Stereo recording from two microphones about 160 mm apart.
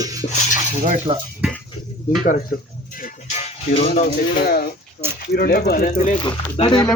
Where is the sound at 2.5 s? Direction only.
65° left (ahead or behind).